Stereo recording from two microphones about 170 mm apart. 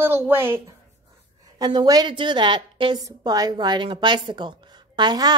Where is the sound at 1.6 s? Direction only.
25° right (ahead or behind).